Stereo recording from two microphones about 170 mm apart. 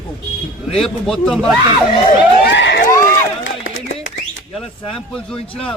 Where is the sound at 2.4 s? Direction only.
90° left.